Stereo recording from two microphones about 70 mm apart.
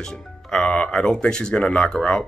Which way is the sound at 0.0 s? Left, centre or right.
Centre.